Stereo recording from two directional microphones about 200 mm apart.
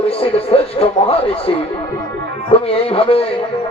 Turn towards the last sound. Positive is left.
turn(degrees=30)  # may be behind; listen again after turning